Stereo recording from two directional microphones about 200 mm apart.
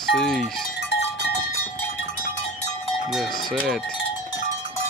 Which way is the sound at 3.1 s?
Centre (ahead or behind).